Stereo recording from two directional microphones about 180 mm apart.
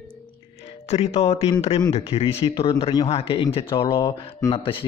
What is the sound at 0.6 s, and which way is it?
Speech, 35° left (ahead or behind).